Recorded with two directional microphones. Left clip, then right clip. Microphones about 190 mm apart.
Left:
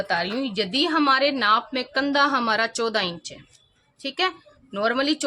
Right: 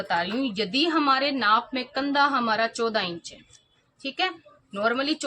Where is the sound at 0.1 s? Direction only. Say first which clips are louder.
Right 3 dB; 50° left (ahead or behind).